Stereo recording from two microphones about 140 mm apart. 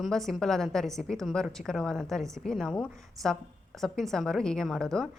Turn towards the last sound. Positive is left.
turn(degrees=5)  # may be behind; listen again after turning